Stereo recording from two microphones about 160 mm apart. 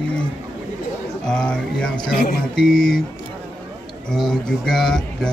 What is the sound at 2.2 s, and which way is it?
Speech, 65° left (ahead or behind).